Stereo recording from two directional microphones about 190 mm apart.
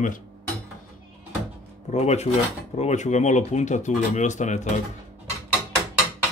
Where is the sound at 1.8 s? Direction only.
35° left (ahead or behind).